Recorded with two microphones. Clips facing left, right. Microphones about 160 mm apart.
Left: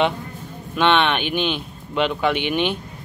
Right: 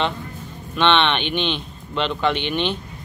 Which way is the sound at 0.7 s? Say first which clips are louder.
Even; 5° left (ahead or behind).